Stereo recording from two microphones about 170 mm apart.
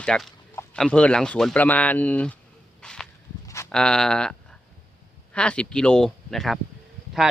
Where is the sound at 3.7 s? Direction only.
5° left (ahead or behind).